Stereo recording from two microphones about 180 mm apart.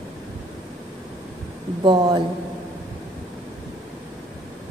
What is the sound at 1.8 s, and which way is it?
Speech, 25° right (ahead or behind).